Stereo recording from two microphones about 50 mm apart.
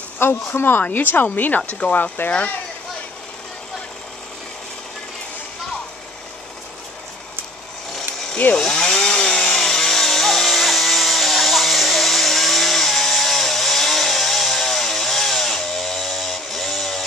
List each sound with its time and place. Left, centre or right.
0.2 s speech: left
1.1 s speech: left
1.7 s speech: left
2.2 s speech: left
8.5 s chainsaw: centre